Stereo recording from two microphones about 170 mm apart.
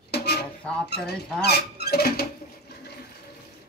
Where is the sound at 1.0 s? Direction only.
70° left (ahead or behind).